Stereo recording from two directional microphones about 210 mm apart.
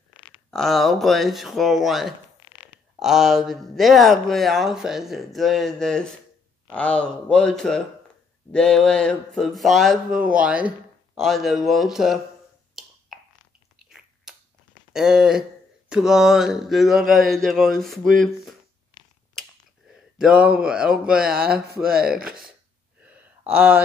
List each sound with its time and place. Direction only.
0.5 s speech: centre (ahead or behind)
12.8 s finger snapping: centre (ahead or behind)
13.8 s chewing: 5° right (ahead or behind)
14.9 s speech: centre (ahead or behind)
20.2 s speech: 5° right (ahead or behind)
21.5 s speech: 45° right (ahead or behind)
23.5 s speech: 5° right (ahead or behind)